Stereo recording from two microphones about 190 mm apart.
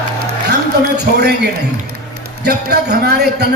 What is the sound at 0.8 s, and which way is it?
Speech, 60° right (ahead or behind).